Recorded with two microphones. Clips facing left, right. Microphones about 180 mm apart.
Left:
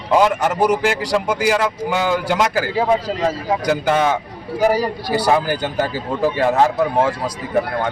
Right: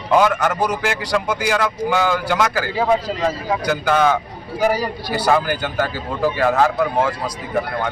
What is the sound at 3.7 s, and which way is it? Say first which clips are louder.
Speech: even; 25° left (ahead or behind).